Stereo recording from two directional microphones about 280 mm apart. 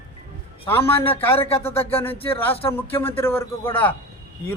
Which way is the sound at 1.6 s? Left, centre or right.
Centre.